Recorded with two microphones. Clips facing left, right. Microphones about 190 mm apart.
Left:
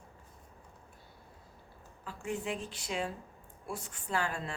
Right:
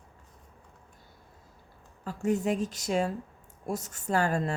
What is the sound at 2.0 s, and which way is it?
A woman's voice, 40° right (ahead or behind).